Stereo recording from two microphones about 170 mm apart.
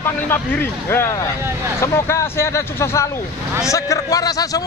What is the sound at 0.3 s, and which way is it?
A man's voice, 10° left (ahead or behind).